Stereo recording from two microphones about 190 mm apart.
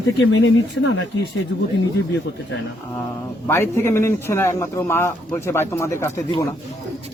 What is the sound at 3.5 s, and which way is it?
A man's voice, 15° left (ahead or behind).